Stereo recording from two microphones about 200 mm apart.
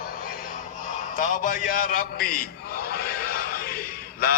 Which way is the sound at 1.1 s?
40° left (ahead or behind).